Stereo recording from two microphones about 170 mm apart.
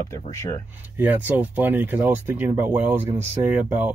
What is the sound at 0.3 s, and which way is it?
Speech, 15° left (ahead or behind).